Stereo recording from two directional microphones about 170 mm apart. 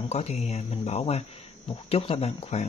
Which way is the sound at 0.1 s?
40° left (ahead or behind).